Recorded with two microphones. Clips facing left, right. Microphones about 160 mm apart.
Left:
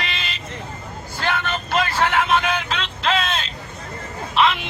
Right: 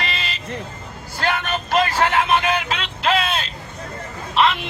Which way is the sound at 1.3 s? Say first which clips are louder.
Right 2 dB; 40° right (ahead or behind).